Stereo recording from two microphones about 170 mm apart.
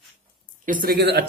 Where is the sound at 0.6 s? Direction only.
55° right (ahead or behind).